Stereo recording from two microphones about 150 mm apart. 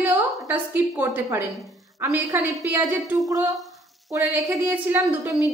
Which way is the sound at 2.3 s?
20° right (ahead or behind).